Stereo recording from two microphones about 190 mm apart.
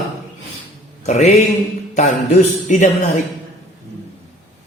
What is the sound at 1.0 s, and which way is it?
Speech, 35° left (ahead or behind).